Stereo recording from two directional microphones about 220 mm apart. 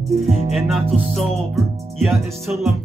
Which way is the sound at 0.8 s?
25° right (ahead or behind).